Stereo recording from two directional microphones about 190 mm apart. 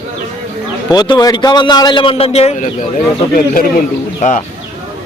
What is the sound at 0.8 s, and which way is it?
A man's voice, 25° left (ahead or behind).